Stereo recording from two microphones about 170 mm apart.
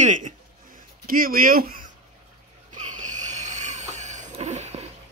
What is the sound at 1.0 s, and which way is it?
Speech, 55° right (ahead or behind).